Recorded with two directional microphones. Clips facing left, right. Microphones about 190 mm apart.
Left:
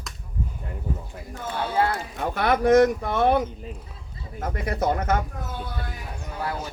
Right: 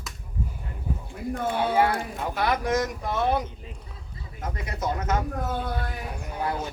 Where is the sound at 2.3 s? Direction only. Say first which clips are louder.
Left 8 dB; 55° left (ahead or behind).